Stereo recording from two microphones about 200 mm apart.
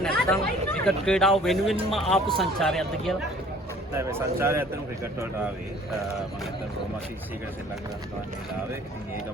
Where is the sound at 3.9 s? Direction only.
10° right (ahead or behind).